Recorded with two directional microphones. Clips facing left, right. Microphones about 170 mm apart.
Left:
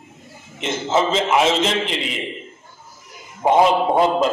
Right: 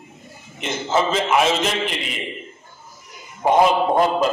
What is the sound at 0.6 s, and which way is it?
A man's voice, 25° left (ahead or behind).